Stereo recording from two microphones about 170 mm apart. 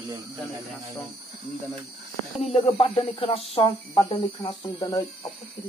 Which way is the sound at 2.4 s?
35° left (ahead or behind).